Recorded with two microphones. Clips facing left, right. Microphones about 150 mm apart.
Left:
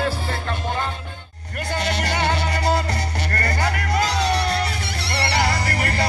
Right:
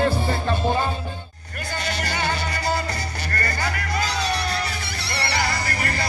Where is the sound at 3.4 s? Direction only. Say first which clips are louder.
Left 3 dB; 70° left (ahead or behind).